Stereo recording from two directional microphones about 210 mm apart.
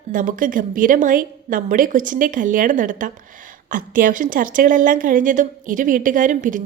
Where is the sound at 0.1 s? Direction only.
40° right (ahead or behind).